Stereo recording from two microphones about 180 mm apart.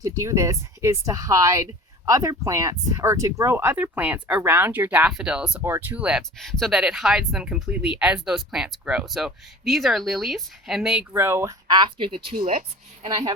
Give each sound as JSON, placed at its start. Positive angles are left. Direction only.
{"t": 0.0, "sound": "speech", "side_deg": -15}
{"t": 11.1, "sound": "a woman's voice", "side_deg": -15}